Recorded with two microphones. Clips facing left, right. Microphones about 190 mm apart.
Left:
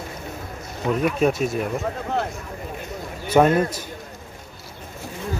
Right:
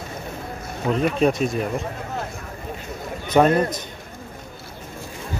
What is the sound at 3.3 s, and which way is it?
Speech, 5° left (ahead or behind).